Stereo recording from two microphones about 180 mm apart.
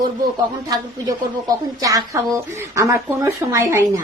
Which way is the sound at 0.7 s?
20° right (ahead or behind).